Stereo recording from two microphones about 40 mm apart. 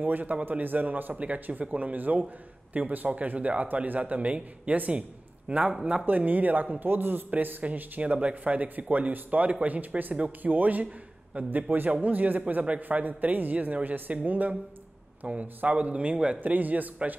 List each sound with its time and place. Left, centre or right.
0.0 s a woman's voice: right
4.0 s speech: right
6.0 s a woman's voice: right
7.2 s a woman's voice: right
8.2 s a man's voice: right
15.2 s speech: right
16.3 s a woman's voice: right